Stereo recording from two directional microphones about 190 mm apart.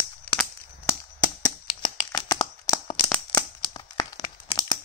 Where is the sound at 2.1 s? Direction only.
20° left (ahead or behind).